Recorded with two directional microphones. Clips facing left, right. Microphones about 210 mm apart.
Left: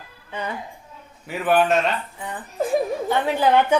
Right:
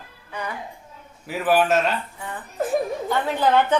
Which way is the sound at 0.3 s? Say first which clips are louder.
Left 2 dB; 25° left (ahead or behind).